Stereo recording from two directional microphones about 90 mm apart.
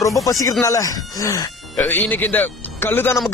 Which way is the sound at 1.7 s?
20° left (ahead or behind).